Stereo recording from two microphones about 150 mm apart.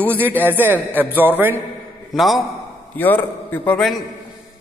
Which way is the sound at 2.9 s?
10° left (ahead or behind).